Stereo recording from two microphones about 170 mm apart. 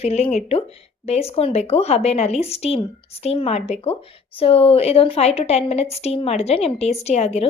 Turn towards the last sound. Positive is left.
turn(degrees=40)  # may be behind; listen again after turning